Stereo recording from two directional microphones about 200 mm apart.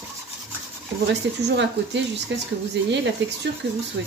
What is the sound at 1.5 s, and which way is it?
Speech, 60° right (ahead or behind).